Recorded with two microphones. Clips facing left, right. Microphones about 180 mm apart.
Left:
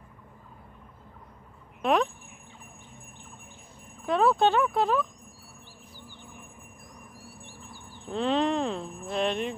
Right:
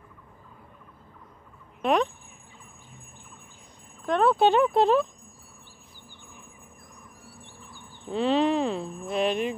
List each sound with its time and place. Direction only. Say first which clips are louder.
1.8 s speech: right 1 dB; centre (ahead or behind)
4.0 s speech: right 1 dB; 5° left (ahead or behind)
4.4 s speech: right 3 dB; 20° right (ahead or behind)
8.1 s speech: right 3 dB; centre (ahead or behind)